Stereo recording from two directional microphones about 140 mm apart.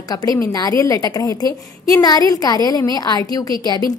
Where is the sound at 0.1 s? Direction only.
25° left (ahead or behind).